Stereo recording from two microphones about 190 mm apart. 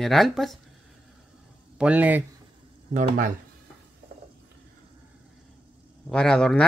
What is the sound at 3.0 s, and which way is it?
Speech, 45° right (ahead or behind).